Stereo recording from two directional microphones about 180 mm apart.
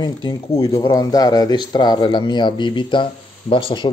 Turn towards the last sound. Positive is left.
turn(degrees=25)  # may be behind; listen again after turning